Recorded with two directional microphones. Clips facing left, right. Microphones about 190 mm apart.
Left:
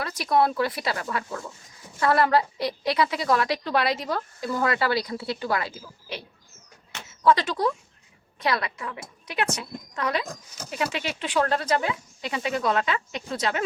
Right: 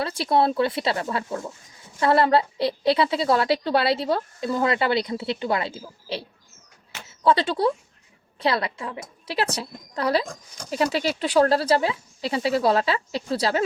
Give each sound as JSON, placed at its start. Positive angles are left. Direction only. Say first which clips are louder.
{"t": 0.0, "sound": "a woman's voice", "louder": "right 2 dB", "side_deg": -30}